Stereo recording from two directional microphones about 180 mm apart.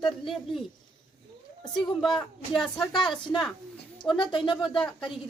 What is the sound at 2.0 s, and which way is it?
Speech, centre (ahead or behind).